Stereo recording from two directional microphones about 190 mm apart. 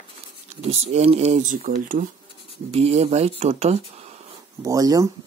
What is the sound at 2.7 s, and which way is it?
Speech, 35° right (ahead or behind).